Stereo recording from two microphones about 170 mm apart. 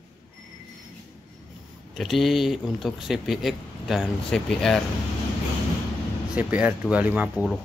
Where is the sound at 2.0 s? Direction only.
Centre (ahead or behind).